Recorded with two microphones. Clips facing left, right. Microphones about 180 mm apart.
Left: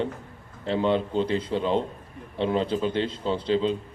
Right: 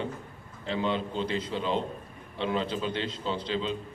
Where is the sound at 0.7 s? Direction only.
60° left (ahead or behind); by 3.7 s 40° left (ahead or behind).